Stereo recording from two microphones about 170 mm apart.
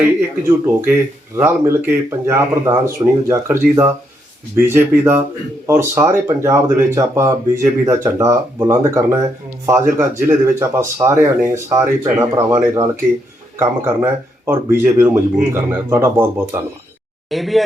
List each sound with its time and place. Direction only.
0.2 s speech: 10° right (ahead or behind)
17.2 s speech: centre (ahead or behind)